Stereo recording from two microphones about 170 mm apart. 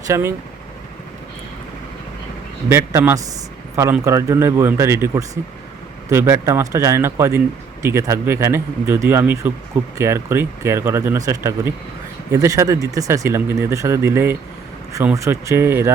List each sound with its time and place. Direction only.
0.1 s a man's voice: 15° right (ahead or behind)
2.6 s a man's voice: 15° right (ahead or behind)